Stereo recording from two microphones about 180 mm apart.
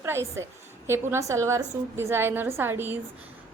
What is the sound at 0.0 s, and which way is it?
A woman's voice, 15° right (ahead or behind).